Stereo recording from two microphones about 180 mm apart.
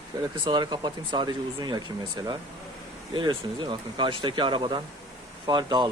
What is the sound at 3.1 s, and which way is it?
A man's voice, 25° right (ahead or behind).